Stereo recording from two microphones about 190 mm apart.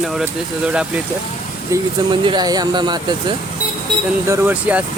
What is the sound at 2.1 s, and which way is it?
Speech, 25° right (ahead or behind).